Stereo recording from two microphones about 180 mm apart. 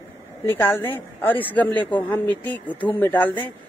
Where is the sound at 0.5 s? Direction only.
10° left (ahead or behind).